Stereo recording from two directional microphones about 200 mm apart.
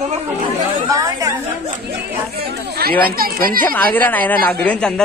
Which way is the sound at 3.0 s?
45° right (ahead or behind).